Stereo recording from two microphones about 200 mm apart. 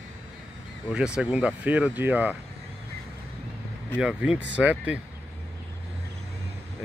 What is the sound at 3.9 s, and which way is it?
Speech, 5° right (ahead or behind).